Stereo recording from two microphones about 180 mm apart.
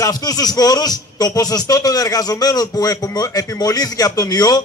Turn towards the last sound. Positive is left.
turn(degrees=20)  # may be behind; listen again after turning